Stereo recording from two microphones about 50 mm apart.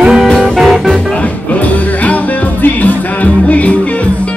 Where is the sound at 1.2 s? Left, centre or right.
Left.